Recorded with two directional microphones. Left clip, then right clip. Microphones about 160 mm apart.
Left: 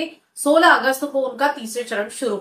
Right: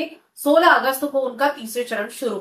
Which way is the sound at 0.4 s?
20° left (ahead or behind).